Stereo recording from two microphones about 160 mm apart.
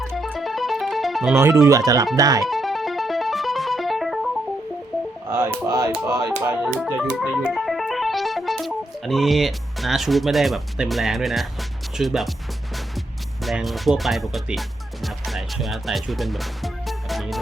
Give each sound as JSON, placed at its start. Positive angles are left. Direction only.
{"t": 0.3, "sound": "music", "side_deg": 0}
{"t": 1.6, "sound": "speech", "side_deg": -20}
{"t": 2.5, "sound": "music", "side_deg": 0}
{"t": 5.3, "sound": "speech", "side_deg": -20}
{"t": 6.6, "sound": "music", "side_deg": 0}
{"t": 11.9, "sound": "speech", "side_deg": 0}
{"t": 13.4, "sound": "speech", "side_deg": 0}
{"t": 15.0, "sound": "music", "side_deg": 0}